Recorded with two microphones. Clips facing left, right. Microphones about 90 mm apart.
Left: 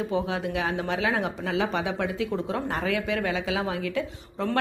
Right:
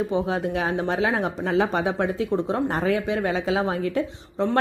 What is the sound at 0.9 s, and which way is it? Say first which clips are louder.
Speech: right 3 dB; 35° right (ahead or behind).